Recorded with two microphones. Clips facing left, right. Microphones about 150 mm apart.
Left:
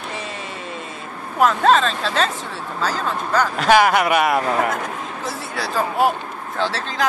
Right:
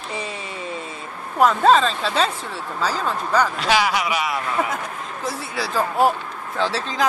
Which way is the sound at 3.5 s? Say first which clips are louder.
Left 5 dB; 50° left (ahead or behind).